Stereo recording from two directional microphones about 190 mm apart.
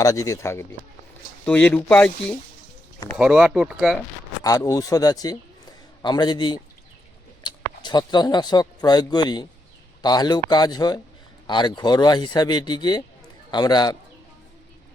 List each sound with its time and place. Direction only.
0.0 s speech: 15° left (ahead or behind)
3.2 s speech: 5° right (ahead or behind)
4.4 s a man's voice: 20° left (ahead or behind)